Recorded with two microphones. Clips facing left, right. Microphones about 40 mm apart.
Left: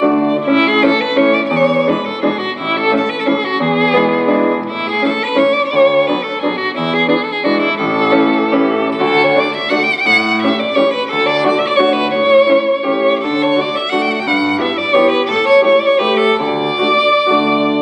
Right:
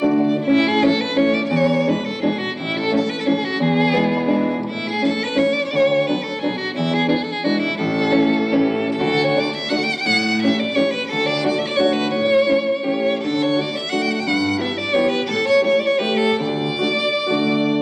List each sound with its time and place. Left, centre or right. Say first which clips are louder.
0.0 s violin: left 4 dB; left
2.9 s music: left 3 dB; left
5.0 s violin: left 5 dB; left
10.0 s music: left 4 dB; left
14.9 s violin: left 7 dB; left
16.8 s music: left 9 dB; left